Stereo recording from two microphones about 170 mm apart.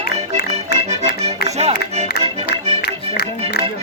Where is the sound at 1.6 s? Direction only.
40° right (ahead or behind).